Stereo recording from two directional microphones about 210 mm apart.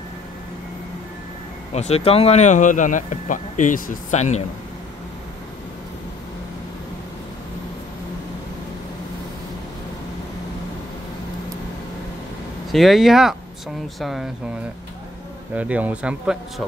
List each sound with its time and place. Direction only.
1.7 s speech: 30° left (ahead or behind)
12.7 s speech: centre (ahead or behind)
15.5 s speech: 5° right (ahead or behind)